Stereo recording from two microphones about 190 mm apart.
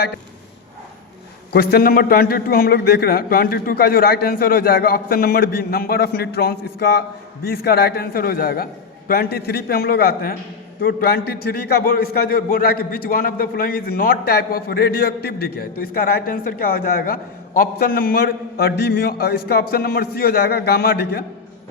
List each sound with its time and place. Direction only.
1.5 s a man's voice: 50° left (ahead or behind)